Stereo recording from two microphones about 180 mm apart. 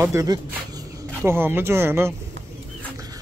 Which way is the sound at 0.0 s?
15° right (ahead or behind).